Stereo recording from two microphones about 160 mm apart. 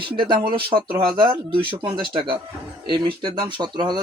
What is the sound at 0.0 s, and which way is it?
Speech, 30° right (ahead or behind).